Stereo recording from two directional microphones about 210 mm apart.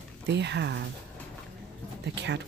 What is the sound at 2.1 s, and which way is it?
Speech, 55° right (ahead or behind).